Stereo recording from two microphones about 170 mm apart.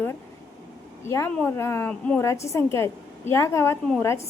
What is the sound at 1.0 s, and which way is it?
A woman's voice, 15° left (ahead or behind).